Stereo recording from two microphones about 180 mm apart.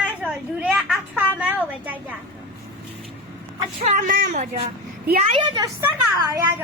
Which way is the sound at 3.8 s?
40° right (ahead or behind).